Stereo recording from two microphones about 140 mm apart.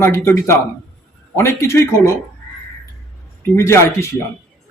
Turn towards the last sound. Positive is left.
turn(degrees=20)  # may be behind; listen again after turning